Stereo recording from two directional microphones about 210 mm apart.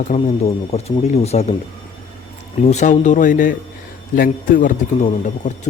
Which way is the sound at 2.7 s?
35° left (ahead or behind).